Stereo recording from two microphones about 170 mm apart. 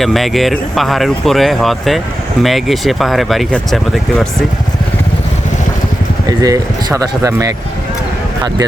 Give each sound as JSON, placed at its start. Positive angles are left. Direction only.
{"t": 0.0, "sound": "speech", "side_deg": 0}
{"t": 6.4, "sound": "speech", "side_deg": -20}